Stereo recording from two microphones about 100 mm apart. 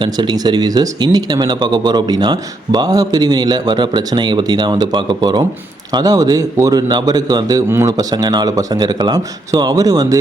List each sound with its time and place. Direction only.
0.0 s speech: 45° right (ahead or behind)